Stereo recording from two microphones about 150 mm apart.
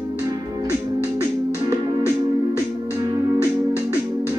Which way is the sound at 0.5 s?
25° right (ahead or behind).